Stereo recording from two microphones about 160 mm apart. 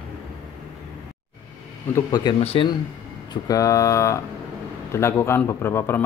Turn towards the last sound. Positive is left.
turn(degrees=15)  # may be behind; listen again after turning